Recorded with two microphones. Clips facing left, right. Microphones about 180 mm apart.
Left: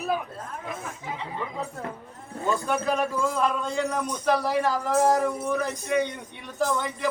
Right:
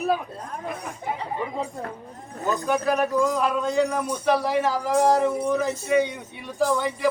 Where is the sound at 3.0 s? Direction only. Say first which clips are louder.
Right 5 dB; 20° right (ahead or behind).